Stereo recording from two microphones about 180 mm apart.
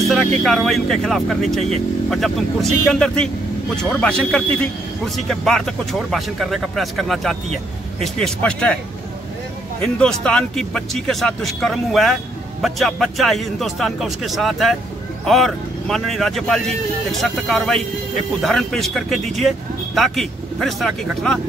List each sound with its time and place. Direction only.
0.1 s speech: centre (ahead or behind)
9.8 s speech: 5° left (ahead or behind)